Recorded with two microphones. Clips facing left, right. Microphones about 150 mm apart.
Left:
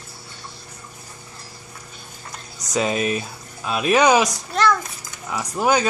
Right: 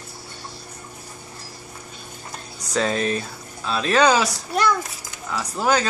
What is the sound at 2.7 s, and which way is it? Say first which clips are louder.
Speech: left 1 dB; 10° left (ahead or behind).